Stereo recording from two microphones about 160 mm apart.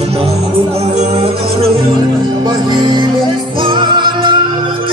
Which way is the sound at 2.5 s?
25° right (ahead or behind).